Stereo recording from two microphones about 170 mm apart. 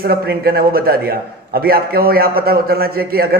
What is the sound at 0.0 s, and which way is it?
Speech, 65° right (ahead or behind).